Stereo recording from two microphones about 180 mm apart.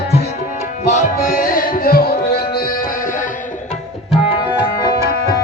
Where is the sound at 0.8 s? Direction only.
40° left (ahead or behind); by 2.4 s 55° left (ahead or behind).